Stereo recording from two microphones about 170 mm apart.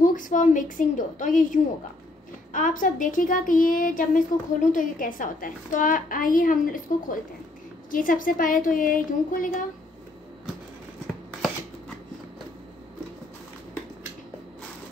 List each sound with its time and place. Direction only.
0.0 s a woman's voice: 50° left (ahead or behind)